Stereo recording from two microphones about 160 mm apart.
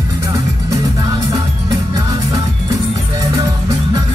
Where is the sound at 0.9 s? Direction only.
20° right (ahead or behind).